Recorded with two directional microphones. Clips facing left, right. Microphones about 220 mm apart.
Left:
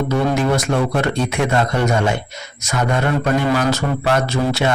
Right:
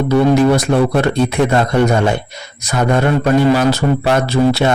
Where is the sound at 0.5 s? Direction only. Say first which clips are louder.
Right 5 dB; 35° right (ahead or behind).